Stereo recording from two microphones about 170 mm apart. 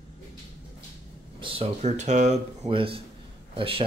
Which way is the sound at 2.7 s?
30° right (ahead or behind).